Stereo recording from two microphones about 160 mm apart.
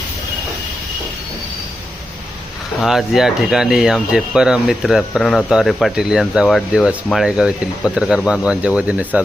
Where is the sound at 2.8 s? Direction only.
Centre (ahead or behind).